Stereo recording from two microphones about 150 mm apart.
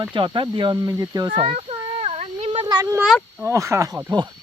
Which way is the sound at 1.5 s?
45° right (ahead or behind).